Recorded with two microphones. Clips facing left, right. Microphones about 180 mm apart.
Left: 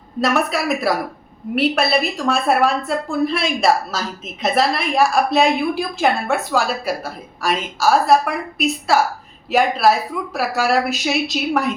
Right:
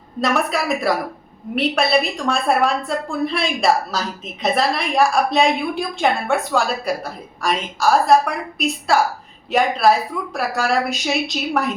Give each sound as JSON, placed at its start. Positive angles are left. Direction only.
{"t": 0.2, "sound": "a woman's voice", "side_deg": 0}